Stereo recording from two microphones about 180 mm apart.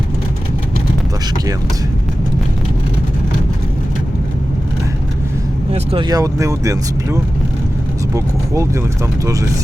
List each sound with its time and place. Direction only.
5.7 s speech: 30° right (ahead or behind)